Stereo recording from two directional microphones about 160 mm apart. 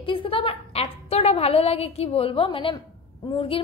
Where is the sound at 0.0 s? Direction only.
35° left (ahead or behind).